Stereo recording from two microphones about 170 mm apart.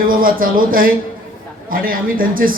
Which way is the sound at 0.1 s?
55° right (ahead or behind).